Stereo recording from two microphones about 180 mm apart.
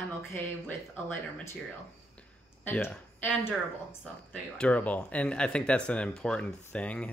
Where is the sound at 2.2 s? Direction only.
10° left (ahead or behind).